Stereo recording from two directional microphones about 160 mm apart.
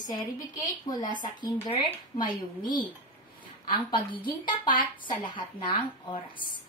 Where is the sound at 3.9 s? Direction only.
30° left (ahead or behind).